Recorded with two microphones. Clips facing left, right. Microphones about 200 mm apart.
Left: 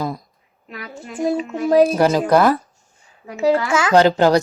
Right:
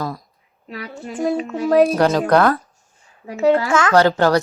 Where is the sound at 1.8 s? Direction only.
Centre (ahead or behind).